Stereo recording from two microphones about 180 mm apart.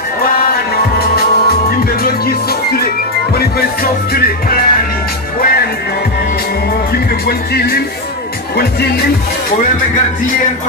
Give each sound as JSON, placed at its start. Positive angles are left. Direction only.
{"t": 0.5, "sound": "music", "side_deg": 60}
{"t": 7.2, "sound": "music", "side_deg": 60}